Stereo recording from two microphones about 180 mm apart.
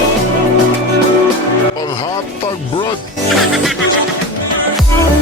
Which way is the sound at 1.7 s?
20° left (ahead or behind).